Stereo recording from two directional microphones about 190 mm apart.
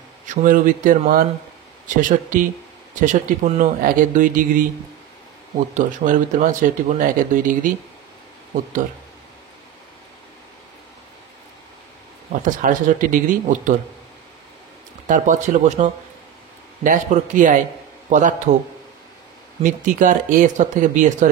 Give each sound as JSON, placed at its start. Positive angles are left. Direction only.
{"t": 0.3, "sound": "speech", "side_deg": -45}
{"t": 5.8, "sound": "speech", "side_deg": -40}
{"t": 12.3, "sound": "speech", "side_deg": -45}
{"t": 15.0, "sound": "speech", "side_deg": -40}
{"t": 19.6, "sound": "speech", "side_deg": -45}